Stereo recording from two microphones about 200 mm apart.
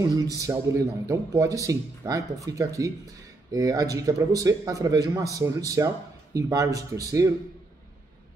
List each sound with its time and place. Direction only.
0.4 s a man's voice: 15° right (ahead or behind)